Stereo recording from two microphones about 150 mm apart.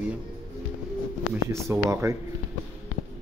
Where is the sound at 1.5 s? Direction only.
20° right (ahead or behind).